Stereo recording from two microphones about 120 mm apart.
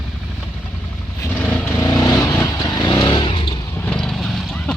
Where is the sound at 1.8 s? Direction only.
30° left (ahead or behind).